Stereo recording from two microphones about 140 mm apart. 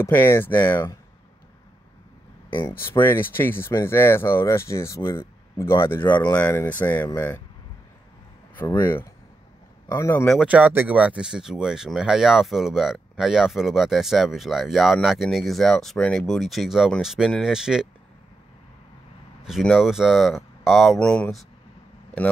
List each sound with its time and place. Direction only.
0.0 s speech: 15° left (ahead or behind)
3.0 s speech: 15° left (ahead or behind)
8.5 s speech: 15° left (ahead or behind)
10.2 s speech: centre (ahead or behind)
10.5 s speech: 15° right (ahead or behind)
19.4 s speech: centre (ahead or behind)